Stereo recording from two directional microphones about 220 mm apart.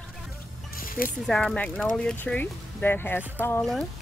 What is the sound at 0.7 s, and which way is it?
Music, 40° left (ahead or behind).